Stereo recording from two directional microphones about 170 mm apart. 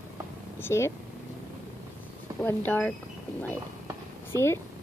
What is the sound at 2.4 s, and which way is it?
Speech, 10° left (ahead or behind).